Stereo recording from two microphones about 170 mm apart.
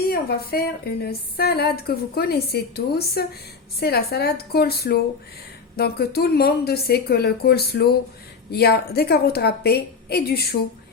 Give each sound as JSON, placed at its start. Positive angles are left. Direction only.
{"t": 0.1, "sound": "a woman's voice", "side_deg": 65}